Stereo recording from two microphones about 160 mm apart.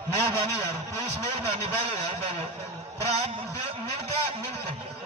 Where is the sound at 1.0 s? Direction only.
40° right (ahead or behind).